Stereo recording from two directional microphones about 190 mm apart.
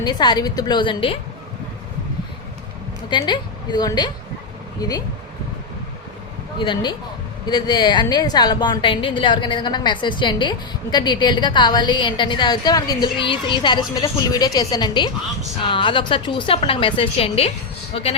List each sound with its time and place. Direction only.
0.0 s a woman's voice: 20° left (ahead or behind)
3.1 s a woman's voice: 25° left (ahead or behind)
6.6 s a woman's voice: 25° left (ahead or behind)